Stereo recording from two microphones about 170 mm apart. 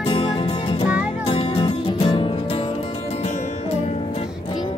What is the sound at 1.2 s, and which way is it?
Music, 35° left (ahead or behind).